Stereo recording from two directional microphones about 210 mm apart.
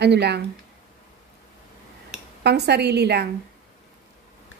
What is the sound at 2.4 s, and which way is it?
Speech, 50° right (ahead or behind).